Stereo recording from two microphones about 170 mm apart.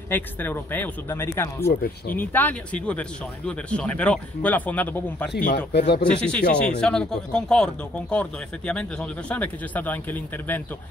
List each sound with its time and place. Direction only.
0.1 s speech: 10° left (ahead or behind)
1.7 s speech: 65° left (ahead or behind)
2.1 s speech: 10° left (ahead or behind)
5.7 s speech: 80° left
6.0 s speech: 5° left (ahead or behind)